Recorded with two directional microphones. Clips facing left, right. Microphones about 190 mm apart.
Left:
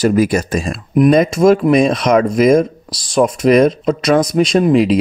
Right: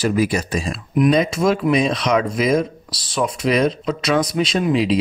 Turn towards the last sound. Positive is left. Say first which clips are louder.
# left 6 dB
turn(degrees=50)  # may be behind; listen again after turning